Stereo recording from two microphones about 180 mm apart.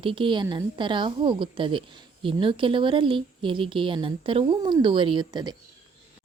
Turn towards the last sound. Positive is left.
turn(degrees=-25)  # may be behind; listen again after turning